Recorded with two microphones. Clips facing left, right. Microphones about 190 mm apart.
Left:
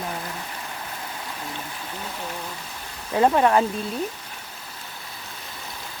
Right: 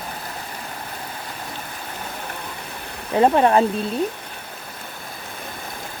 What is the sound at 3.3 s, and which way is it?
Speech, 30° right (ahead or behind).